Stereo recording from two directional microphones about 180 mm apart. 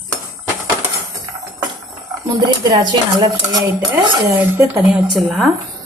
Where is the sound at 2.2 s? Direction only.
25° right (ahead or behind).